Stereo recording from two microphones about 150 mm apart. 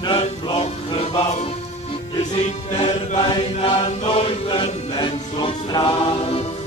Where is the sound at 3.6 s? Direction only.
40° left (ahead or behind).